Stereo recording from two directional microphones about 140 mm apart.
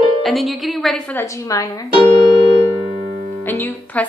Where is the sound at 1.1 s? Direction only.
25° left (ahead or behind).